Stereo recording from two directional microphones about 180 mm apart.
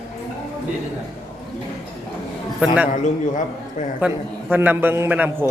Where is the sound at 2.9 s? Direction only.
45° left (ahead or behind).